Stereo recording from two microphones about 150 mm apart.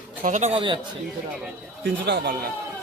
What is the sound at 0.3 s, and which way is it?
Speech, 50° right (ahead or behind).